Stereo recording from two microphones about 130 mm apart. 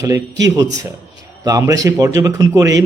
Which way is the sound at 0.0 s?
25° right (ahead or behind).